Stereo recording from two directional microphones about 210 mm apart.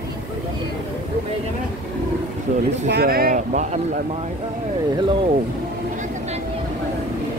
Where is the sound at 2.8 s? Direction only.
50° right (ahead or behind).